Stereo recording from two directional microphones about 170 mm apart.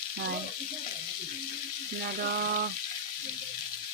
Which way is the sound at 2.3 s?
65° right (ahead or behind).